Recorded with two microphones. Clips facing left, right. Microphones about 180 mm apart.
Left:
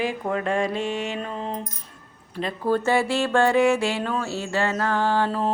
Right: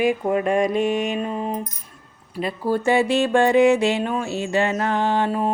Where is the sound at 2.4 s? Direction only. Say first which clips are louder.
Right 2 dB; 15° right (ahead or behind).